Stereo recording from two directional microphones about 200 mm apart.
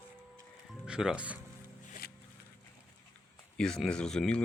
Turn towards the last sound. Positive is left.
turn(degrees=5)  # may be behind; listen again after turning